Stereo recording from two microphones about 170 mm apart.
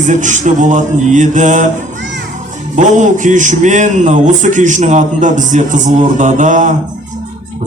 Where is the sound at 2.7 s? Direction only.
45° right (ahead or behind).